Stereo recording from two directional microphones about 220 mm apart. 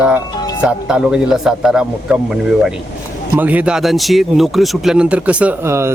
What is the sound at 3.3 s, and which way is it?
Speech, 5° right (ahead or behind).